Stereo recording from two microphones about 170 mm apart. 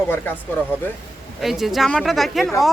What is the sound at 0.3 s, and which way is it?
Speech, 10° left (ahead or behind).